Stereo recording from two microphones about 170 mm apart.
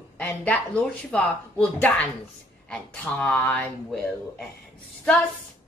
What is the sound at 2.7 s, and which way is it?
Speech, 5° left (ahead or behind).